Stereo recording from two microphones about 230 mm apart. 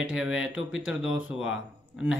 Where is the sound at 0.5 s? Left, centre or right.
Left.